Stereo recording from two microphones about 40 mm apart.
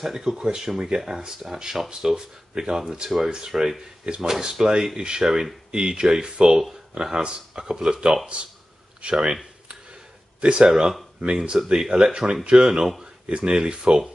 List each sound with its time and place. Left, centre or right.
0.0 s speech: centre
9.0 s speech: right
11.1 s speech: right
11.5 s speech: centre
13.0 s a sound: centre
13.5 s speech: right